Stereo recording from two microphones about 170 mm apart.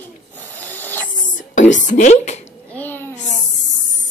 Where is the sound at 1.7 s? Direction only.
45° left (ahead or behind).